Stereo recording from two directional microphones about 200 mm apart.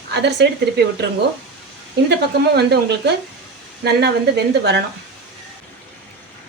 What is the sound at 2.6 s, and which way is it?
A woman's voice, 55° right (ahead or behind).